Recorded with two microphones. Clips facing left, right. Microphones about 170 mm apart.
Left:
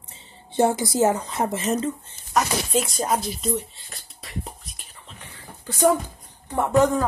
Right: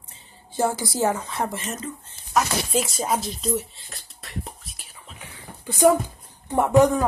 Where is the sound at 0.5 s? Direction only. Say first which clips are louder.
Left 4 dB; 25° left (ahead or behind).